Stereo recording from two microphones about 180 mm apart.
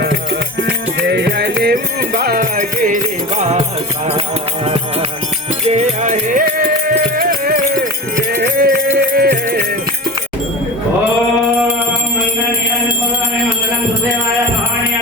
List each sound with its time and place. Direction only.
1.0 s music: 70° right (ahead or behind); by 9.6 s 50° right (ahead or behind)